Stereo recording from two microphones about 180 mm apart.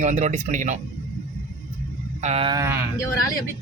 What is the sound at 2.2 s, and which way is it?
Speech, 35° right (ahead or behind).